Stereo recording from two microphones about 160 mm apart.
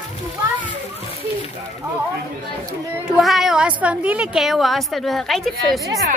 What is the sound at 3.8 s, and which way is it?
A woman's voice, 10° right (ahead or behind).